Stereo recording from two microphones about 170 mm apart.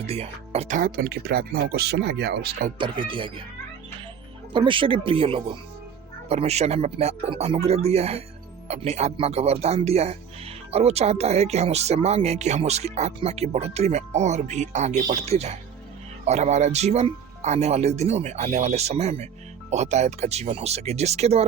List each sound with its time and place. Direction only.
0.1 s speech: 35° right (ahead or behind)
0.8 s speech: 60° right (ahead or behind); by 2.6 s 80° right
2.7 s speech: 30° right (ahead or behind)
4.5 s speech: 30° right (ahead or behind)